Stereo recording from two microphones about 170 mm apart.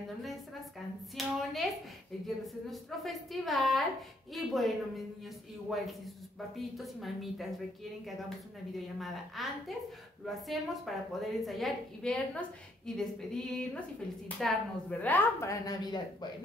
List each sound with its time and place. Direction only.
1.1 s a woman's voice: centre (ahead or behind)
8.7 s a woman's voice: centre (ahead or behind)
15.6 s speech: 25° left (ahead or behind)